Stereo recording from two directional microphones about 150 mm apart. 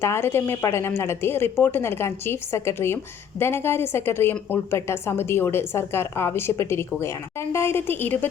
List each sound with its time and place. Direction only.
0.0 s a woman's voice: 15° left (ahead or behind)